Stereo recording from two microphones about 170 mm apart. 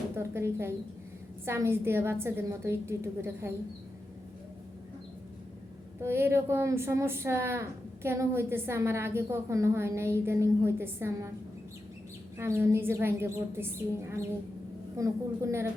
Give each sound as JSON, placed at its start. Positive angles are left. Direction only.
{"t": 0.2, "sound": "a woman's voice", "side_deg": -15}
{"t": 6.0, "sound": "a woman's voice", "side_deg": -15}
{"t": 12.4, "sound": "a woman's voice", "side_deg": -15}